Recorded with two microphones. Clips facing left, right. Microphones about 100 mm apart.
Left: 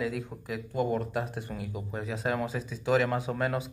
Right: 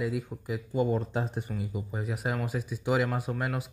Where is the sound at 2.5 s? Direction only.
15° right (ahead or behind).